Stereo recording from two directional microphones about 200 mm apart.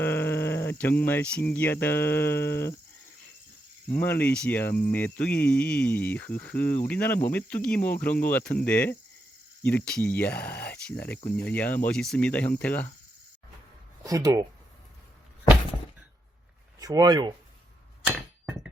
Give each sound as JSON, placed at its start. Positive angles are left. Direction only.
{"t": 0.0, "sound": "speech", "side_deg": 10}
{"t": 3.9, "sound": "speech", "side_deg": 10}
{"t": 14.0, "sound": "speech", "side_deg": -15}
{"t": 16.8, "sound": "speech", "side_deg": -20}
{"t": 18.0, "sound": "a sound", "side_deg": -5}